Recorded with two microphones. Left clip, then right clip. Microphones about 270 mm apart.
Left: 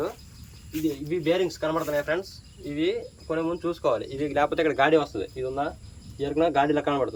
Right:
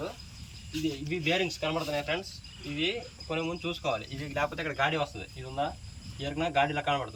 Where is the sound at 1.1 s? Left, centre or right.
Left.